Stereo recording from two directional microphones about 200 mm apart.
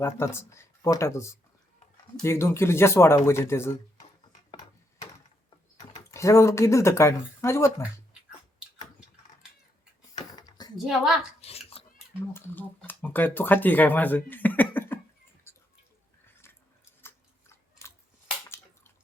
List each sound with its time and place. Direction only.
0.0 s speech: 10° left (ahead or behind)
5.9 s speech: 15° left (ahead or behind)
10.8 s a woman's voice: centre (ahead or behind)
11.3 s chewing: 30° left (ahead or behind)
12.3 s speech: 10° left (ahead or behind)
15.5 s a sound: 10° left (ahead or behind)
17.8 s scissors: 15° left (ahead or behind)